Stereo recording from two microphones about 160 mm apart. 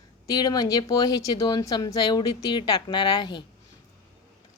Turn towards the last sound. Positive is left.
turn(degrees=30)  # may be behind; listen again after turning